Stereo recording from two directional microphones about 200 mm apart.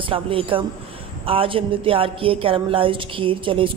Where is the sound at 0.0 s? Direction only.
25° right (ahead or behind).